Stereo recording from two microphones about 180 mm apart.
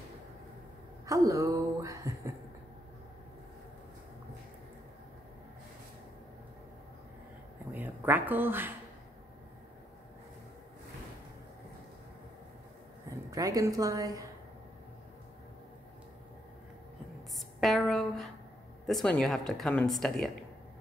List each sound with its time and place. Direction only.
1.0 s speech: 15° right (ahead or behind)
7.7 s speech: 10° right (ahead or behind)
13.1 s a woman's voice: 20° right (ahead or behind)
17.6 s speech: centre (ahead or behind)